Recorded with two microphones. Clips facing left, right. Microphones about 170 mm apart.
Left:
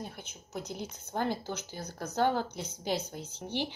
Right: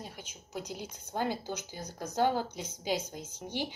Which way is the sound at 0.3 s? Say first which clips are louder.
Even; 10° right (ahead or behind).